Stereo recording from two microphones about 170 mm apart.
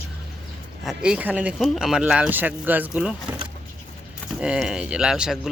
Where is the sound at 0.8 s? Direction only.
5° right (ahead or behind).